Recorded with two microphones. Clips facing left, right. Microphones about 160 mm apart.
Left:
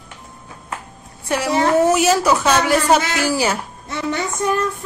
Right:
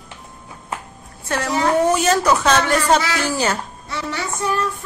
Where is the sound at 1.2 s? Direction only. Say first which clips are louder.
Left 2 dB; 10° left (ahead or behind).